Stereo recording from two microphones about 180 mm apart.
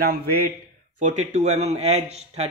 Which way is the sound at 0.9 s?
40° right (ahead or behind).